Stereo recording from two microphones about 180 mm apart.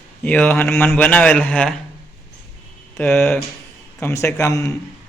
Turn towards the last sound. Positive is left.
turn(degrees=15)  # may be behind; listen again after turning